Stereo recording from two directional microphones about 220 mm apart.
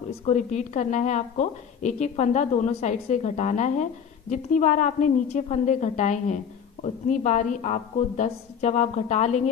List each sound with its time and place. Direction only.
0.2 s a woman's voice: 30° left (ahead or behind)